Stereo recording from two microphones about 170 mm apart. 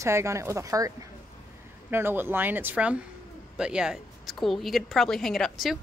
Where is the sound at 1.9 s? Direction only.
15° right (ahead or behind).